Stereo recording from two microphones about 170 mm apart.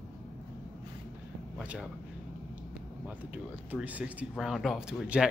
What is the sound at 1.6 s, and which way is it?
Speech, 5° right (ahead or behind).